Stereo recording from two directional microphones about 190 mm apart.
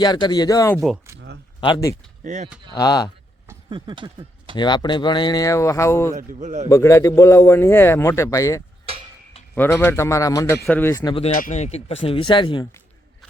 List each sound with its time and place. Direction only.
0.0 s speech: 20° left (ahead or behind)
2.2 s a man's voice: 40° right (ahead or behind)
2.7 s speech: 20° left (ahead or behind)
3.7 s speech: 25° right (ahead or behind)
4.5 s speech: 25° left (ahead or behind)
6.1 s a man's voice: 40° right (ahead or behind)
6.7 s a man's voice: 15° left (ahead or behind)
11.3 s speech: 45° left (ahead or behind); by 12.6 s 25° left (ahead or behind)